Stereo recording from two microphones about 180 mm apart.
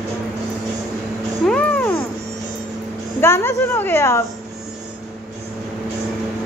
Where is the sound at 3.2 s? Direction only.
15° left (ahead or behind).